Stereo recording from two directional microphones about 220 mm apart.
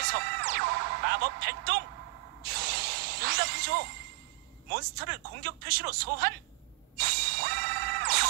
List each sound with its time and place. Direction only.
0.0 s music: 45° right (ahead or behind)
2.4 s a sound: 45° right (ahead or behind)
4.7 s speech: 45° right (ahead or behind)
7.0 s ding: 45° right (ahead or behind)